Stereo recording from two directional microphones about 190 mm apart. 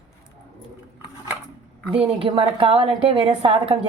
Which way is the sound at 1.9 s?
30° right (ahead or behind).